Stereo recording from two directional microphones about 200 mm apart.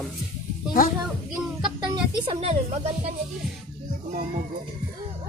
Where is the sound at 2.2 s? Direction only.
30° right (ahead or behind).